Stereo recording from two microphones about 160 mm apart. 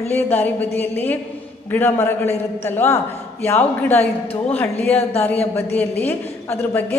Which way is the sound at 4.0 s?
40° left (ahead or behind).